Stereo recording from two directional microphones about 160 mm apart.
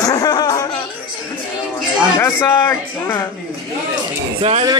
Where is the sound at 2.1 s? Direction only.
15° left (ahead or behind).